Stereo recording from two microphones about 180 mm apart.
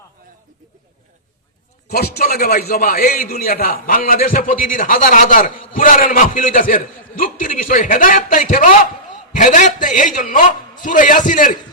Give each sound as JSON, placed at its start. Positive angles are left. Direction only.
{"t": 1.9, "sound": "a man's voice", "side_deg": 60}